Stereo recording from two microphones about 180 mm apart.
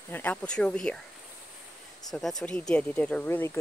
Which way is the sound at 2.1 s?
Centre (ahead or behind).